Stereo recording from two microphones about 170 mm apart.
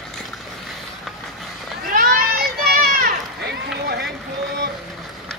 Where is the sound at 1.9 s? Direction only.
60° right (ahead or behind).